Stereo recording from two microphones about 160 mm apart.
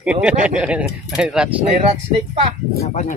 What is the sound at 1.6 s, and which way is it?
Speech, 35° right (ahead or behind).